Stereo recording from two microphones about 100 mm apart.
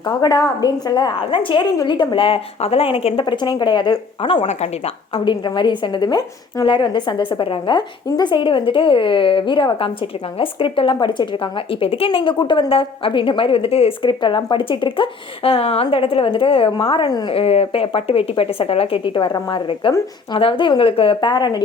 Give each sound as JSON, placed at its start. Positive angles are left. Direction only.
{"t": 0.0, "sound": "a woman's voice", "side_deg": 45}
{"t": 1.2, "sound": "speech", "side_deg": 60}
{"t": 3.2, "sound": "a woman's voice", "side_deg": 45}
{"t": 4.2, "sound": "speech", "side_deg": 65}
{"t": 5.2, "sound": "a woman's voice", "side_deg": 50}
{"t": 8.0, "sound": "speech", "side_deg": 45}
{"t": 11.7, "sound": "speech", "side_deg": 70}
{"t": 14.1, "sound": "speech", "side_deg": 50}
{"t": 17.1, "sound": "a woman's voice", "side_deg": 40}
{"t": 17.3, "sound": "a woman's voice", "side_deg": 85}